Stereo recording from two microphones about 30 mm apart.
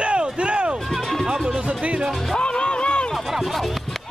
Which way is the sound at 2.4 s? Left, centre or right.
Left.